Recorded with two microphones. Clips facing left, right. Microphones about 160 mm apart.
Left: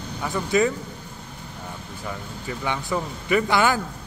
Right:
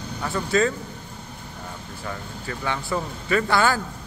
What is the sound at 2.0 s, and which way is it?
Speech, 15° left (ahead or behind).